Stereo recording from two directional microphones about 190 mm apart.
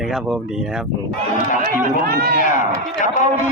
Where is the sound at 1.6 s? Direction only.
55° right (ahead or behind).